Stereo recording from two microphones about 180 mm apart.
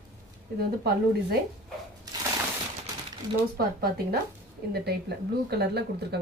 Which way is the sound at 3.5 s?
55° right (ahead or behind).